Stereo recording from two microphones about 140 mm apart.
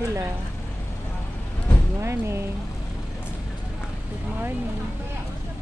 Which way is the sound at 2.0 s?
20° right (ahead or behind).